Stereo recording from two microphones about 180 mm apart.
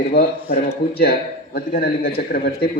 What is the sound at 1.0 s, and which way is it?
A man's voice, 60° left (ahead or behind).